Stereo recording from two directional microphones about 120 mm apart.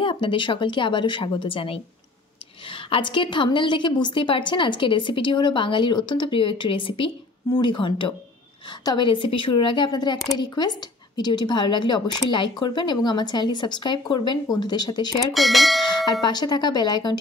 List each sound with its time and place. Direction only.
0.0 s a woman's voice: 45° left (ahead or behind)
15.3 s speech: centre (ahead or behind)
16.1 s a woman's voice: 35° left (ahead or behind)